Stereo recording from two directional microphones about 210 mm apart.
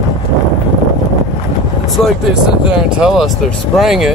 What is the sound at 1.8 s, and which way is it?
Speech, centre (ahead or behind).